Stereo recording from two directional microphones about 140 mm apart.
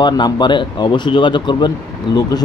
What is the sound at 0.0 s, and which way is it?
A man's voice, 35° left (ahead or behind).